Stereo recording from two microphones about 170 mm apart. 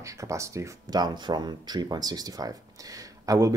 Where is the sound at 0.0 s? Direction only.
20° right (ahead or behind).